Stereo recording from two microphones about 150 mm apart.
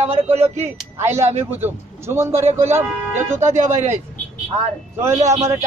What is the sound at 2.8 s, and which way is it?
Speech, 15° right (ahead or behind).